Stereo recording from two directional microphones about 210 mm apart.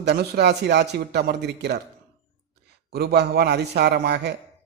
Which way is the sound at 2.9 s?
50° right (ahead or behind).